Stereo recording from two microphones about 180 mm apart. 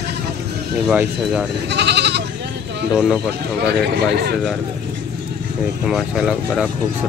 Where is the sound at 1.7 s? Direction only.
70° right (ahead or behind).